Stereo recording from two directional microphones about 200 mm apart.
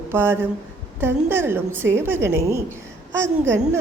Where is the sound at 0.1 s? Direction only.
10° right (ahead or behind).